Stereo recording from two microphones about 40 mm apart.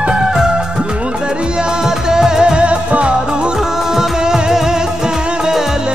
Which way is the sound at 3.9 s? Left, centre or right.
Centre.